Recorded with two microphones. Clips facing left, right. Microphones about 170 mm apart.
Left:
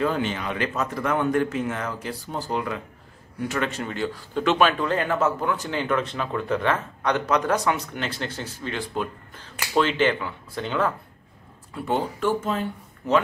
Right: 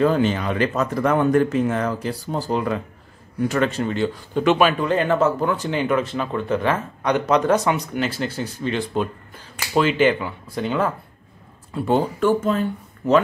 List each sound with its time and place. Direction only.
0.0 s speech: 40° right (ahead or behind)
5.7 s speech: 15° right (ahead or behind)
7.9 s speech: 5° right (ahead or behind)
8.6 s speech: 25° right (ahead or behind)
9.6 s speech: 10° right (ahead or behind)
11.7 s speech: 35° right (ahead or behind)
12.2 s speech: 50° right (ahead or behind)